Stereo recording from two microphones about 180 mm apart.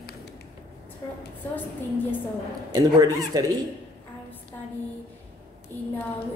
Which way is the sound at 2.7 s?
20° right (ahead or behind).